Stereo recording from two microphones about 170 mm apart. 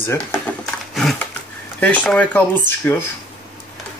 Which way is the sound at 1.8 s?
10° left (ahead or behind).